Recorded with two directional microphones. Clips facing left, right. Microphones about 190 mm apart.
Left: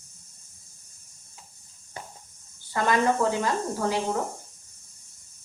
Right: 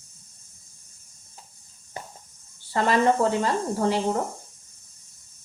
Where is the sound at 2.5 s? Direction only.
30° right (ahead or behind).